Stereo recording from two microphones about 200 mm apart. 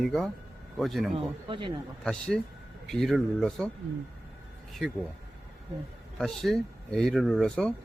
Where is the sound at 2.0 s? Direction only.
5° left (ahead or behind).